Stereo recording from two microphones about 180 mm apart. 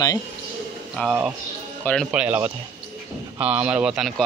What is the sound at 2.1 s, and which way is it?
Speech, 5° right (ahead or behind).